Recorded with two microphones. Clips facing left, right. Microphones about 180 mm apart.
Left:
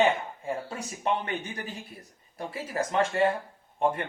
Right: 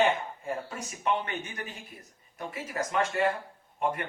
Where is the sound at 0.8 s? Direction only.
30° left (ahead or behind).